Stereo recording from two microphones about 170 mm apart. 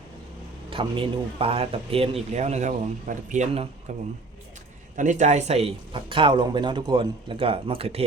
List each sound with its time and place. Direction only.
0.7 s a man's voice: 30° right (ahead or behind)